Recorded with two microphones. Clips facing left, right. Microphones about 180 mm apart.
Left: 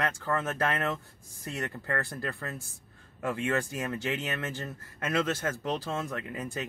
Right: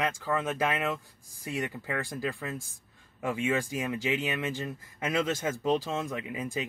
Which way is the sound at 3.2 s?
10° right (ahead or behind).